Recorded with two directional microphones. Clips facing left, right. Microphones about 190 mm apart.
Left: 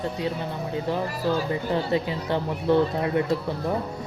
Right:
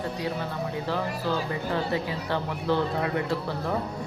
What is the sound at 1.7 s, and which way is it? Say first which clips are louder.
Speech: left 3 dB; 20° left (ahead or behind).